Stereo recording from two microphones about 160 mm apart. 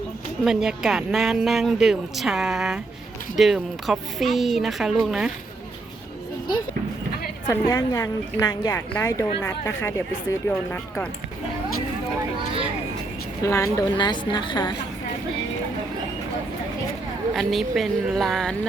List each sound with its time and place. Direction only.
0.4 s a woman's voice: 5° right (ahead or behind)
7.4 s a woman's voice: 20° left (ahead or behind)
13.4 s a woman's voice: 20° left (ahead or behind)
17.3 s a woman's voice: centre (ahead or behind)